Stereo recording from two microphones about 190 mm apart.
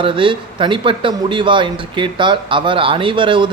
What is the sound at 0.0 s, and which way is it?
Speech, 25° right (ahead or behind).